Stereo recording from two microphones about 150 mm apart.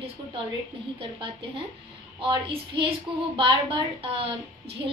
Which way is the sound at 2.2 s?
35° right (ahead or behind).